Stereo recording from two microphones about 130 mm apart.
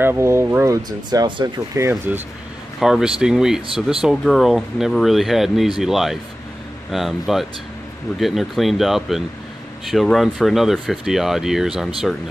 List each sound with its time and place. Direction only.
0.0 s speech: 20° right (ahead or behind)
1.9 s speech: 15° right (ahead or behind)
2.8 s speech: 5° right (ahead or behind)